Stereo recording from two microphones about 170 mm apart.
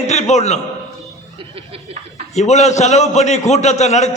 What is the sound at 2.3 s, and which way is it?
A man's voice, 40° left (ahead or behind).